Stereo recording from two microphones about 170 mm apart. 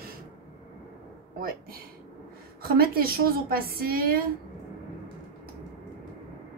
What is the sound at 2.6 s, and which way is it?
A woman's voice, 60° right (ahead or behind).